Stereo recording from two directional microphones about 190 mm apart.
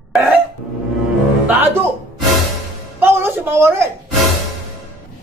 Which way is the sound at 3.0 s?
15° right (ahead or behind).